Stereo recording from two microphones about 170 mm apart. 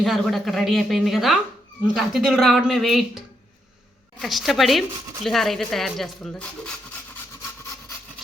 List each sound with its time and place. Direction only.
0.0 s speech: centre (ahead or behind)